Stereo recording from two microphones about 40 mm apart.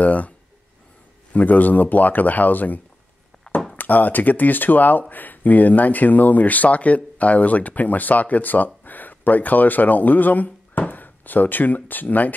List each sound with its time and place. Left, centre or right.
0.0 s speech: left
1.3 s speech: left